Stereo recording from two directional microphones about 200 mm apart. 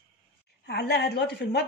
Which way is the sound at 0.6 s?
55° left (ahead or behind).